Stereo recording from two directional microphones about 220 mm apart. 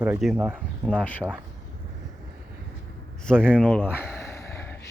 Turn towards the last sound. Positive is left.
turn(degrees=10)  # may be behind; listen again after turning